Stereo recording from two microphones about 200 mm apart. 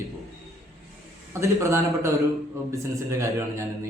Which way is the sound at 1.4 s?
15° right (ahead or behind).